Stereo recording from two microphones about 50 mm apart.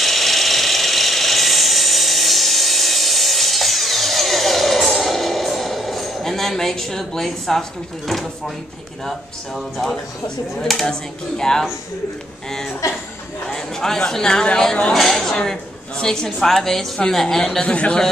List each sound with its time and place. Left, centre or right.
0.0 s a sound: centre
10.7 s speech: centre
17.6 s speech: left